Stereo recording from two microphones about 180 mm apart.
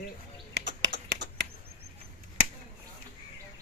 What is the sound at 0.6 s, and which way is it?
Typing, 80° right.